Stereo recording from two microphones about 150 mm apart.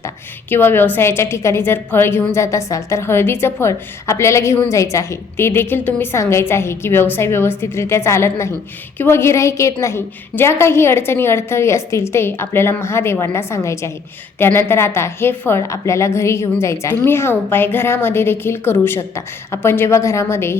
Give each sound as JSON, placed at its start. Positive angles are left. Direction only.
{"t": 0.5, "sound": "a woman's voice", "side_deg": 15}